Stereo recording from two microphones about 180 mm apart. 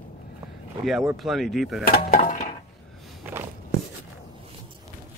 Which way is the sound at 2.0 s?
45° left (ahead or behind).